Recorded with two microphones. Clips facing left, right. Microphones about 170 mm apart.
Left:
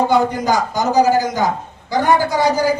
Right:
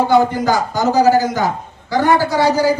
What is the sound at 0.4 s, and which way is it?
Speech, 15° left (ahead or behind).